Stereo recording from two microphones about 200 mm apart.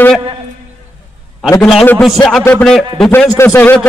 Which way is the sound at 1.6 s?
5° left (ahead or behind).